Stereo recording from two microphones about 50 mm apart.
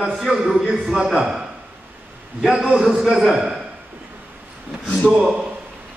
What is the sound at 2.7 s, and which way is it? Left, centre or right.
Speech, centre.